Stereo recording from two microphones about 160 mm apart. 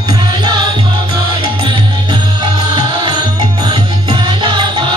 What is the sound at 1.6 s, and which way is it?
Music, 30° right (ahead or behind).